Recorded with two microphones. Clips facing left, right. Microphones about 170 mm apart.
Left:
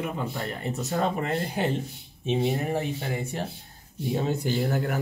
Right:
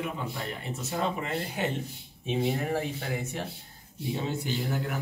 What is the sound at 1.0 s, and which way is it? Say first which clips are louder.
Speech: left 3 dB; 45° left (ahead or behind).